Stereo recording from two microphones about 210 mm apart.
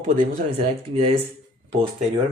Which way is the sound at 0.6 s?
30° right (ahead or behind).